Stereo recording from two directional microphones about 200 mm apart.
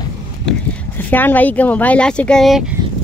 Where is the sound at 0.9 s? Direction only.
10° left (ahead or behind).